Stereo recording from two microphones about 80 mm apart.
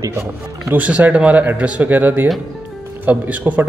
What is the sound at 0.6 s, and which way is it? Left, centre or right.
Speech, centre.